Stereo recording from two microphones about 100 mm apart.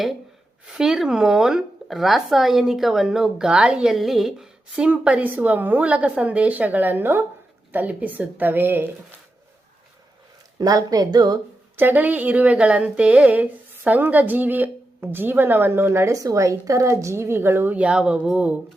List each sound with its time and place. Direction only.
0.7 s speech: 5° right (ahead or behind)
10.6 s speech: 40° right (ahead or behind)
11.8 s speech: 20° right (ahead or behind)